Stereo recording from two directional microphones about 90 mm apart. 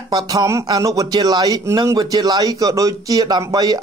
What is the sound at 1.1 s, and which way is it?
A man's voice, 50° right (ahead or behind).